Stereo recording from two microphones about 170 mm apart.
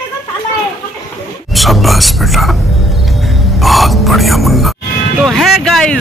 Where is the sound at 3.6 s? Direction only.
Centre (ahead or behind).